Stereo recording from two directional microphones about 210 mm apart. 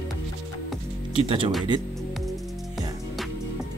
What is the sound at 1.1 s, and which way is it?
Speech, 25° right (ahead or behind).